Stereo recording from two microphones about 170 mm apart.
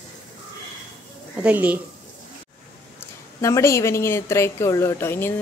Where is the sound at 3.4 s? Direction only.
15° left (ahead or behind).